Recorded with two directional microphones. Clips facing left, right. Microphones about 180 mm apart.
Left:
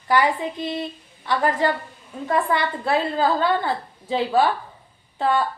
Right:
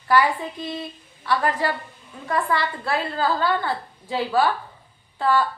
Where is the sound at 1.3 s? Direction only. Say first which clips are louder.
Left 2 dB; 20° left (ahead or behind).